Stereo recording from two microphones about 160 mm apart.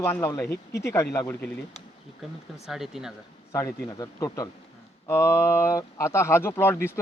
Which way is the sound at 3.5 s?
20° left (ahead or behind).